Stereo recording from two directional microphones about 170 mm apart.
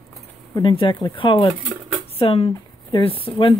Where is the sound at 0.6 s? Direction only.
30° left (ahead or behind).